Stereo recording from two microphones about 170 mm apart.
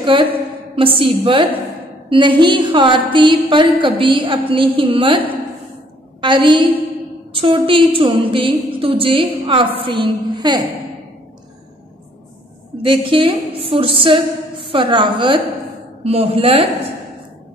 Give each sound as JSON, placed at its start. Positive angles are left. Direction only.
{"t": 0.0, "sound": "a woman's voice", "side_deg": -30}
{"t": 6.2, "sound": "a woman's voice", "side_deg": -30}
{"t": 12.8, "sound": "a woman's voice", "side_deg": -30}